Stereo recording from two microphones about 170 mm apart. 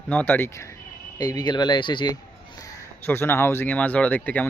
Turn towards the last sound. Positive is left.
turn(degrees=10)  # may be behind; listen again after turning